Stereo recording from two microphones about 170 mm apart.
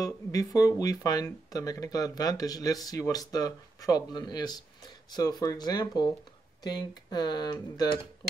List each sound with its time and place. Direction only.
0.0 s speech: 20° left (ahead or behind)